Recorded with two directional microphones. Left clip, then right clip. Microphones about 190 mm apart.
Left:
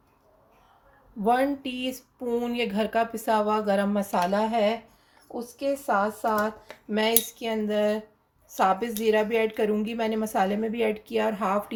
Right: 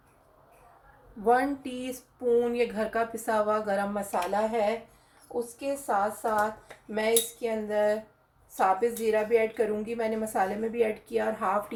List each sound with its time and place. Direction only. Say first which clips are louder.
1.2 s a woman's voice: left 1 dB; 40° left (ahead or behind)